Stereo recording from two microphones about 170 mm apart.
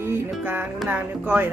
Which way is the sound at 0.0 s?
15° right (ahead or behind).